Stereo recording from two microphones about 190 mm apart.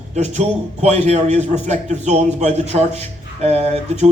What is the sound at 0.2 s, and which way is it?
Speech, 35° right (ahead or behind).